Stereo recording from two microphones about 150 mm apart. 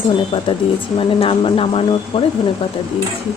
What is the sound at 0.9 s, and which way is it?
Speech, 35° left (ahead or behind).